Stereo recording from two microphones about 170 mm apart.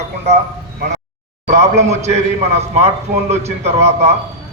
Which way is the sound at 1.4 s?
40° right (ahead or behind).